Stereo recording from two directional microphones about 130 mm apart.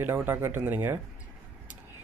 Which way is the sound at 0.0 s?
15° right (ahead or behind).